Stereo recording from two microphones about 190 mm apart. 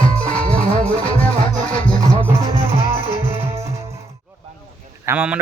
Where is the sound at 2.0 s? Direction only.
20° right (ahead or behind).